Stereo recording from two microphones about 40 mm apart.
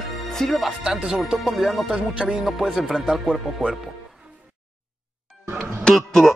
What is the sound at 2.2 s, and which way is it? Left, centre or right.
Speech, centre.